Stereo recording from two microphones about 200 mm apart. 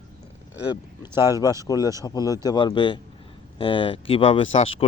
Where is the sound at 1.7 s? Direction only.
20° left (ahead or behind).